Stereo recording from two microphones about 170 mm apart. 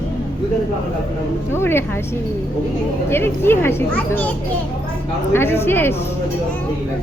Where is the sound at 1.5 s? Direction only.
15° left (ahead or behind).